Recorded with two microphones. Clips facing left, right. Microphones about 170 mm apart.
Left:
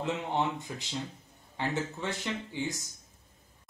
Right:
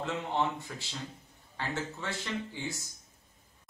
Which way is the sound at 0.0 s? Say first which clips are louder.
Left 1 dB; 20° left (ahead or behind).